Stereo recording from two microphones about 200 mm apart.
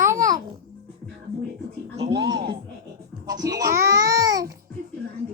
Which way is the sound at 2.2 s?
25° right (ahead or behind).